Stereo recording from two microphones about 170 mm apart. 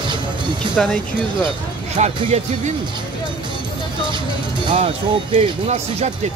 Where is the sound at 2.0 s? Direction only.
40° right (ahead or behind).